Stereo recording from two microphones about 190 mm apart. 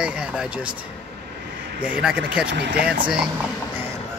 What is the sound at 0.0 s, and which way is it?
Speech, 5° right (ahead or behind).